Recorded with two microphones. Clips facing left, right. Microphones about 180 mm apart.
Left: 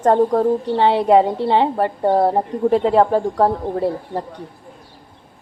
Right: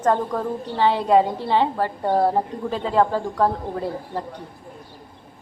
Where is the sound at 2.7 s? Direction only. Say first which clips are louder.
Left 10 dB; 65° left (ahead or behind).